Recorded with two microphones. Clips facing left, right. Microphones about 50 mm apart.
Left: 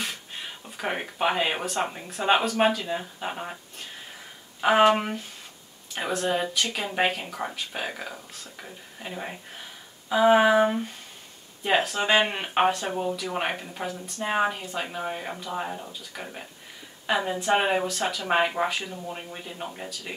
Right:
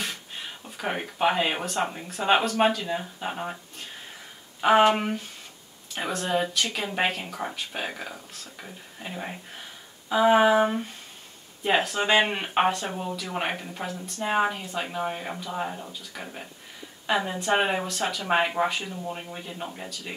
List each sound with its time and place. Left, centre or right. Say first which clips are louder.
0.7 s speech: even; centre
4.6 s speech: even; centre